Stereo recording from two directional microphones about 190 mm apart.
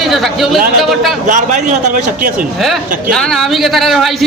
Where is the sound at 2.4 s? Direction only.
Centre (ahead or behind).